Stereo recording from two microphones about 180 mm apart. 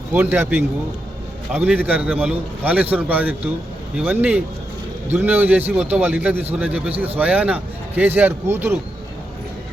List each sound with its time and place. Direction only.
0.1 s a man's voice: 10° right (ahead or behind)